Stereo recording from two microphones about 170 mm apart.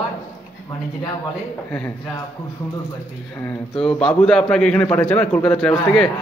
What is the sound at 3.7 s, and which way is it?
A man's voice, 5° left (ahead or behind).